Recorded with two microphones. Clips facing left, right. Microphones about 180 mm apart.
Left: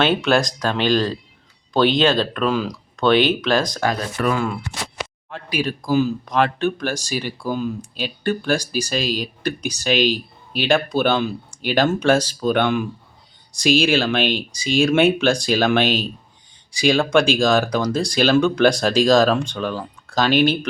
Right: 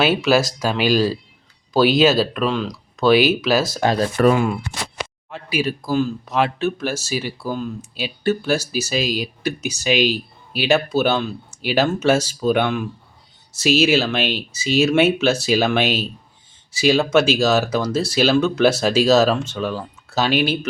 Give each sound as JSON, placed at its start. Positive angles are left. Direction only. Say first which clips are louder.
{"t": 0.0, "sound": "speech", "louder": "right 1 dB", "side_deg": -5}
{"t": 4.3, "sound": "speech", "louder": "right 3 dB", "side_deg": -15}
{"t": 5.3, "sound": "speech", "louder": "right 1 dB", "side_deg": -5}